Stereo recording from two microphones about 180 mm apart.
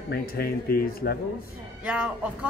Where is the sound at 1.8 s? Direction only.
5° right (ahead or behind).